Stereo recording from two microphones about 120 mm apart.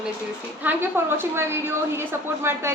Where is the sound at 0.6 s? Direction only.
15° right (ahead or behind).